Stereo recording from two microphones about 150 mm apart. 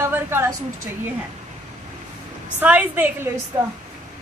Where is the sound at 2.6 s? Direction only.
10° right (ahead or behind).